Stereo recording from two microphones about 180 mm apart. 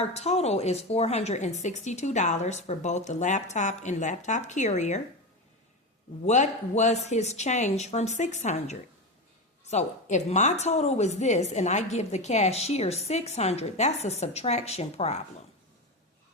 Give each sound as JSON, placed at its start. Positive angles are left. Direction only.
{"t": 0.0, "sound": "a woman's voice", "side_deg": 35}
{"t": 6.2, "sound": "a woman's voice", "side_deg": 40}